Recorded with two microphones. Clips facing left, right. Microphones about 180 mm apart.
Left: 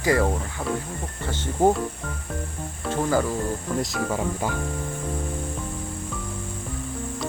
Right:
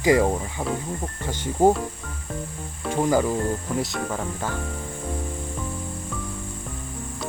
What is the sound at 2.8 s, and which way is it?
Speech, 15° right (ahead or behind).